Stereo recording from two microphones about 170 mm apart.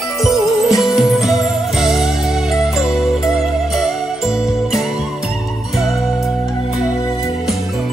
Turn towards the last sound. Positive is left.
turn(degrees=0)  # may be behind; listen again after turning